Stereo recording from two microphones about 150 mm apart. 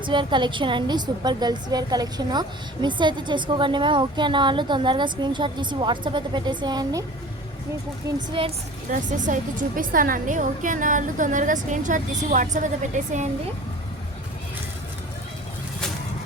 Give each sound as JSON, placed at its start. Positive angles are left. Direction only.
{"t": 0.0, "sound": "a woman's voice", "side_deg": -30}
{"t": 8.3, "sound": "a woman's voice", "side_deg": -35}
{"t": 8.9, "sound": "a woman's voice", "side_deg": -55}